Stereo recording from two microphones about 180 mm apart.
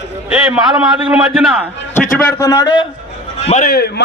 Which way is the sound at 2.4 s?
20° left (ahead or behind).